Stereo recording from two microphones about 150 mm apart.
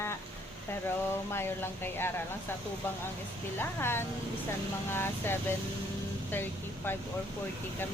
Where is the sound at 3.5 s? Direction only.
15° left (ahead or behind).